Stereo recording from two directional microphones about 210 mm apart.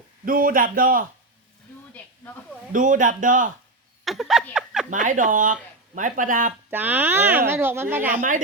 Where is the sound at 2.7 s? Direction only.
40° right (ahead or behind).